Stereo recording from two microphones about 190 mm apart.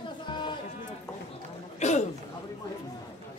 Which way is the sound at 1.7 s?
40° left (ahead or behind).